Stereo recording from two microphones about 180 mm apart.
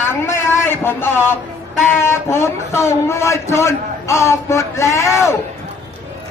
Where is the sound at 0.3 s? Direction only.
15° left (ahead or behind).